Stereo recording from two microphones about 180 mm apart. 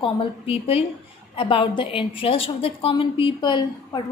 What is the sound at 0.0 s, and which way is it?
A woman's voice, 30° left (ahead or behind).